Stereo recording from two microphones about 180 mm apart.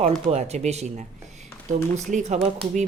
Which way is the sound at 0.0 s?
35° right (ahead or behind).